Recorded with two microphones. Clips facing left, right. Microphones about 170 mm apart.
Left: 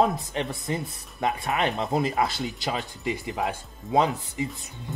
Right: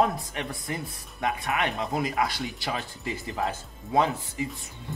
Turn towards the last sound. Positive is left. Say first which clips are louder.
# left 2 dB
turn(degrees=20)  # may be behind; listen again after turning